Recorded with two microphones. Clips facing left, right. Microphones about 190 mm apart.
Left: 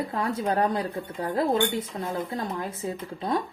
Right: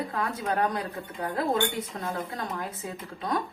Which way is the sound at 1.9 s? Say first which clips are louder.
Left 3 dB; 25° left (ahead or behind).